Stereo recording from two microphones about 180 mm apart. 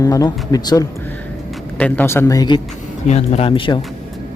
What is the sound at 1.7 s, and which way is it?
Speech, 10° left (ahead or behind).